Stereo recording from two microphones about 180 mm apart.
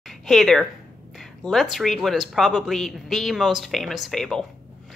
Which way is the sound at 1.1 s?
Centre (ahead or behind).